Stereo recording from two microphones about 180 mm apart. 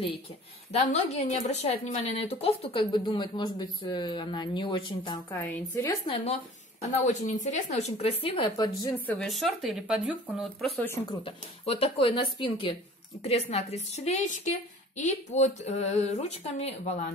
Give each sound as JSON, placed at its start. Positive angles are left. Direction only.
{"t": 0.7, "sound": "speech", "side_deg": 40}
{"t": 5.3, "sound": "a woman's voice", "side_deg": 10}
{"t": 6.8, "sound": "speech", "side_deg": 40}
{"t": 8.9, "sound": "speech", "side_deg": 10}
{"t": 10.8, "sound": "a woman's voice", "side_deg": 15}
{"t": 11.2, "sound": "speech", "side_deg": 35}